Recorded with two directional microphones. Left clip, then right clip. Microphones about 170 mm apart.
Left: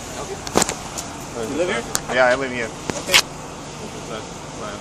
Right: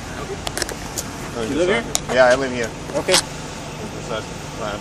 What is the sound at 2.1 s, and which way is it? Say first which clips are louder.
Speech: right 3 dB; 15° left (ahead or behind).